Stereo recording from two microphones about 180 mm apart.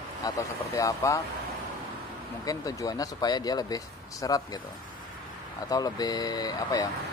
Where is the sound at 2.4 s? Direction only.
20° left (ahead or behind).